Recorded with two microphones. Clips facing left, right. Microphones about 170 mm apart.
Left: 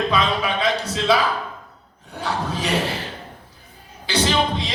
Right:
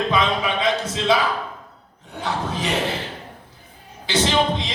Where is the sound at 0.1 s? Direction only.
20° right (ahead or behind).